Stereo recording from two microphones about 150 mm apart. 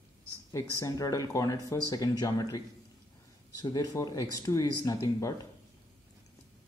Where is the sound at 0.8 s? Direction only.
20° left (ahead or behind).